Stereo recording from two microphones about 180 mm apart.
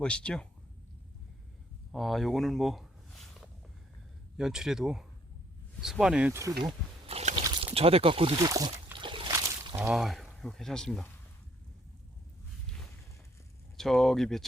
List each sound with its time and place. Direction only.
0.0 s speech: 5° left (ahead or behind)
1.9 s a sound: centre (ahead or behind)
4.4 s speech: 5° right (ahead or behind)
7.1 s a sound: 35° right (ahead or behind)
7.3 s speech: 30° right (ahead or behind)
8.5 s a sound: 25° right (ahead or behind)
9.7 s speech: 10° right (ahead or behind)
10.0 s speech: centre (ahead or behind)
13.7 s speech: centre (ahead or behind)